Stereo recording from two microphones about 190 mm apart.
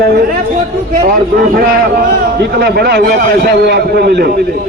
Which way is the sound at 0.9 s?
50° right (ahead or behind).